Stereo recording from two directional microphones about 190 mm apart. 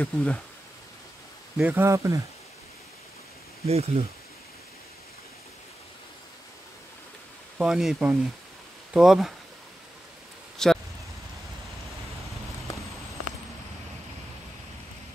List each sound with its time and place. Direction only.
0.0 s speech: 5° left (ahead or behind)
1.6 s speech: 10° right (ahead or behind)
3.6 s speech: 30° right (ahead or behind)
7.5 s speech: centre (ahead or behind)
10.6 s speech: centre (ahead or behind)